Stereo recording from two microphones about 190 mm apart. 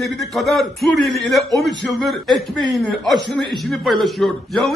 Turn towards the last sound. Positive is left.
turn(degrees=0)  # may be behind; listen again after turning